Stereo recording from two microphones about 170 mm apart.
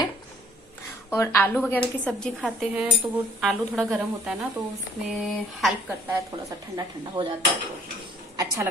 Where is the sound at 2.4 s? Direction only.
5° right (ahead or behind).